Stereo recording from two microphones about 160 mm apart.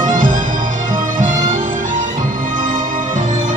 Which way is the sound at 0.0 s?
55° right (ahead or behind).